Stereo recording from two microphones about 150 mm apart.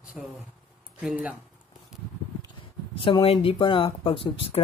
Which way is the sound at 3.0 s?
30° left (ahead or behind).